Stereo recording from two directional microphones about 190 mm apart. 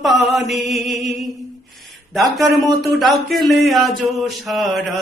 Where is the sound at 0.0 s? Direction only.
Centre (ahead or behind).